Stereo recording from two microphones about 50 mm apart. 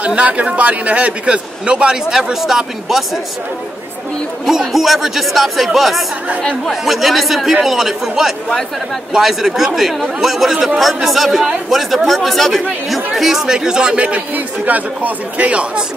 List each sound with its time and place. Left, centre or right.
0.0 s a man's voice: right
2.0 s speech: centre
4.5 s speech: centre; by 15.6 s right